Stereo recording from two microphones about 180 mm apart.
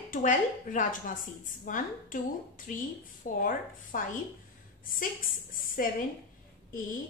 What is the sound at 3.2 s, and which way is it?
A woman's voice, 45° left (ahead or behind).